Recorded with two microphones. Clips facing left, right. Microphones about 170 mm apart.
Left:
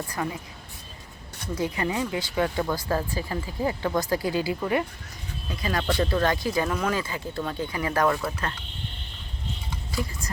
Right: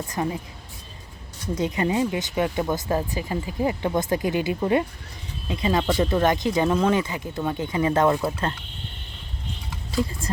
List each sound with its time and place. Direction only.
0.1 s speech: 25° right (ahead or behind)
1.5 s speech: 20° right (ahead or behind)